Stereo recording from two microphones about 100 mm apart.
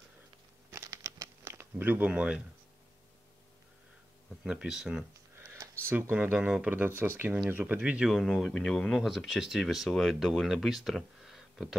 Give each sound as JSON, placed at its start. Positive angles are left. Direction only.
{"t": 0.7, "sound": "crumpling", "side_deg": -30}
{"t": 4.5, "sound": "speech", "side_deg": -5}
{"t": 5.4, "sound": "a sound", "side_deg": -30}
{"t": 6.3, "sound": "speech", "side_deg": -10}
{"t": 6.7, "sound": "speech", "side_deg": -20}